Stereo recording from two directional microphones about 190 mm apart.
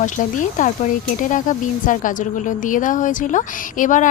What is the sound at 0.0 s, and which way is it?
A woman's voice, 40° left (ahead or behind).